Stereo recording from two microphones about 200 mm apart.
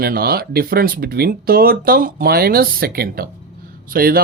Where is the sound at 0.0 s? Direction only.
50° right (ahead or behind).